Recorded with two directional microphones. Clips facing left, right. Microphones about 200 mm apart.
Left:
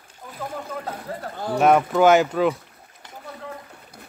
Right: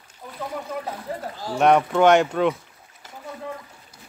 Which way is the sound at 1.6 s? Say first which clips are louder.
Even; centre (ahead or behind).